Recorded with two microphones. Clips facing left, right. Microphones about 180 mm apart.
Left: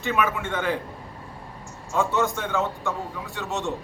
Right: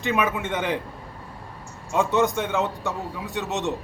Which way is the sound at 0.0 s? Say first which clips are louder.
Right 1 dB; 20° right (ahead or behind).